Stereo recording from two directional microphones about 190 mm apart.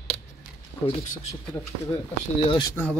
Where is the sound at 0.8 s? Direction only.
35° left (ahead or behind).